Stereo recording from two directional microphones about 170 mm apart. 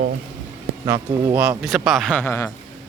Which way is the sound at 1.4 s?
5° right (ahead or behind).